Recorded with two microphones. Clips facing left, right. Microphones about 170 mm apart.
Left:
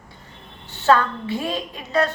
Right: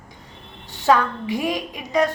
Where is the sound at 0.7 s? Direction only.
15° right (ahead or behind).